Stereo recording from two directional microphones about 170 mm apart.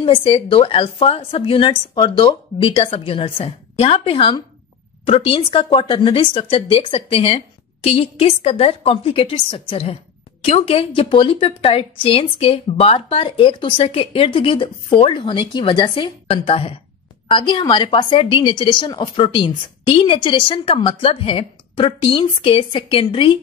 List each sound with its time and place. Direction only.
0.0 s a woman's voice: 35° left (ahead or behind)